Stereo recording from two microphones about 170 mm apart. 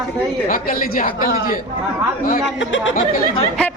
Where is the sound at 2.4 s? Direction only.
90° left.